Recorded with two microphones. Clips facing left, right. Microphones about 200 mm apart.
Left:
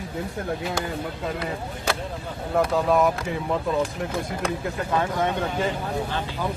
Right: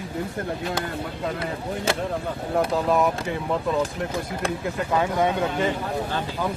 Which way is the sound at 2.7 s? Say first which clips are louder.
Left 2 dB; centre (ahead or behind).